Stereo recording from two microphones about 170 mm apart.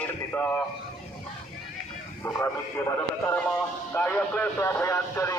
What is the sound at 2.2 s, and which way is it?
A man's voice, 15° left (ahead or behind).